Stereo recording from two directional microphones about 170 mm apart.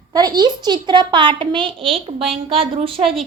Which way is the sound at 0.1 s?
25° right (ahead or behind).